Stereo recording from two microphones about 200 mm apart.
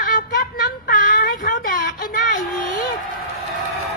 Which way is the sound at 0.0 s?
40° left (ahead or behind).